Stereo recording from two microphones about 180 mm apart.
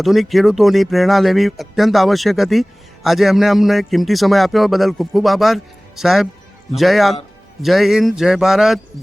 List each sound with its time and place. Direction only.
0.0 s speech: centre (ahead or behind)